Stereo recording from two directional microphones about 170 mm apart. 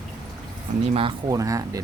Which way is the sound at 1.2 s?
20° right (ahead or behind).